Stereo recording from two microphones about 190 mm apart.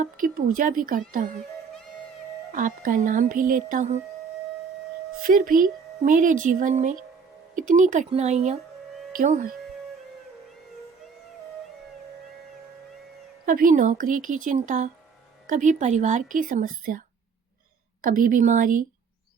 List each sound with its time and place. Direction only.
0.0 s speech: 45° right (ahead or behind)
2.5 s speech: 45° right (ahead or behind)
5.2 s speech: 45° right (ahead or behind)
13.4 s speech: 45° right (ahead or behind)
18.0 s speech: 45° right (ahead or behind)